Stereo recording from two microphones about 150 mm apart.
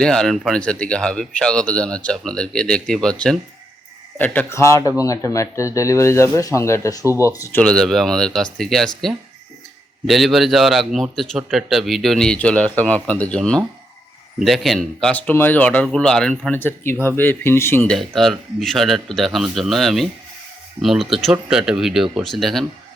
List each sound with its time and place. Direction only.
0.0 s a man's voice: 5° left (ahead or behind); by 7.1 s 20° left (ahead or behind)
7.6 s a man's voice: 5° left (ahead or behind)
17.9 s a man's voice: centre (ahead or behind)